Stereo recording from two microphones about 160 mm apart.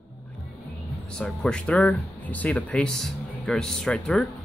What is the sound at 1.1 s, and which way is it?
A man's voice, 5° left (ahead or behind).